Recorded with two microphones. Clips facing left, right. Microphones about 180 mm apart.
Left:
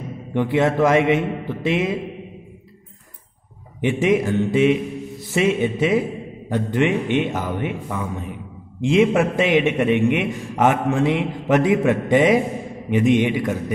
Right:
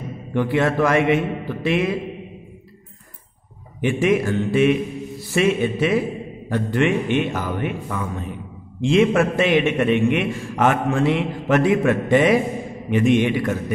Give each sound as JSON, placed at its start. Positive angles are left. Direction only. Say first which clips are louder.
{"t": 0.3, "sound": "speech", "louder": "left 1 dB", "side_deg": 20}
{"t": 3.8, "sound": "a man's voice", "louder": "even", "side_deg": 20}